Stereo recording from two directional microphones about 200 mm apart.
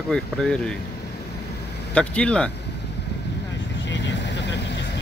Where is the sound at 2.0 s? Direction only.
5° left (ahead or behind).